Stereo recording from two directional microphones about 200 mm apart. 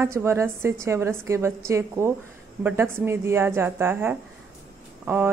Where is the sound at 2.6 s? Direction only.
10° right (ahead or behind).